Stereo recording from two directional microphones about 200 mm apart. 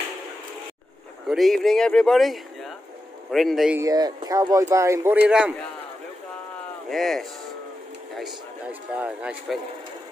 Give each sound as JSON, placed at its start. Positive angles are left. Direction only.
{"t": 1.3, "sound": "speech", "side_deg": 0}
{"t": 3.8, "sound": "a man's voice", "side_deg": -20}
{"t": 6.9, "sound": "speech", "side_deg": 0}